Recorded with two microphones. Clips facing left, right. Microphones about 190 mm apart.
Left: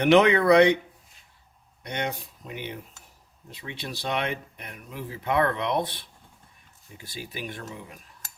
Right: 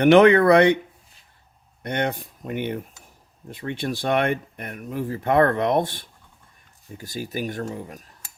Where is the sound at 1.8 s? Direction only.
55° right (ahead or behind).